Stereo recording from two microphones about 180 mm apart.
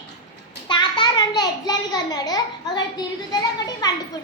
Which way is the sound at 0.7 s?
25° left (ahead or behind).